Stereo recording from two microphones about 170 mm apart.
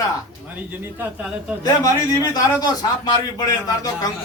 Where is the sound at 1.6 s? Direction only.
20° left (ahead or behind).